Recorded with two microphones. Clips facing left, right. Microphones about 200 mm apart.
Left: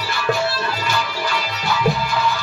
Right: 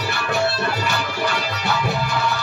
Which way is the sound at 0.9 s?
65° right (ahead or behind).